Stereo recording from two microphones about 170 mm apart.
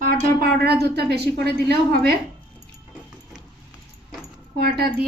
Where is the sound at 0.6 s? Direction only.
75° right (ahead or behind).